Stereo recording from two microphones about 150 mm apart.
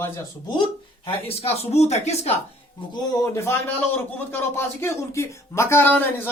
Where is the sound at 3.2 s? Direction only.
20° left (ahead or behind).